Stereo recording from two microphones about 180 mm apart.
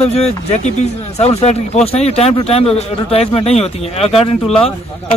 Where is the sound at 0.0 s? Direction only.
35° left (ahead or behind).